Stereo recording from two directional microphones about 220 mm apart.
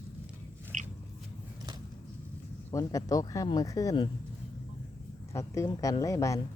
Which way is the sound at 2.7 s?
15° left (ahead or behind).